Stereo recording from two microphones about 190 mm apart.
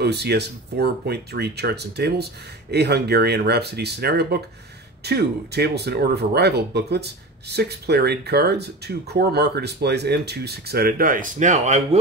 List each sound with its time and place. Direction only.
0.0 s speech: 60° right (ahead or behind); by 12.0 s 35° right (ahead or behind)